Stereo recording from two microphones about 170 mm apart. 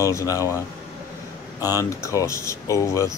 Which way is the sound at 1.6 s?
20° left (ahead or behind).